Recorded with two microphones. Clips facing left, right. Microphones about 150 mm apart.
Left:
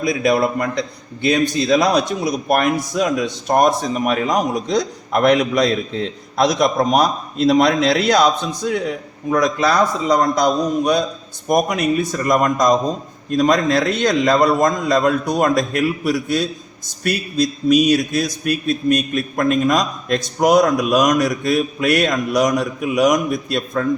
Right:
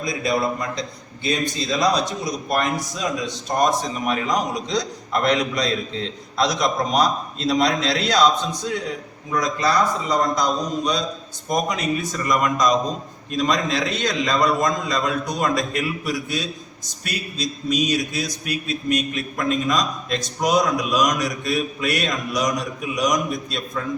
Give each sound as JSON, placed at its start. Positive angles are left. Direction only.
{"t": 0.0, "sound": "a man's voice", "side_deg": 65}